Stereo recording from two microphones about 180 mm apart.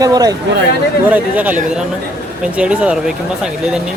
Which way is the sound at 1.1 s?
10° right (ahead or behind).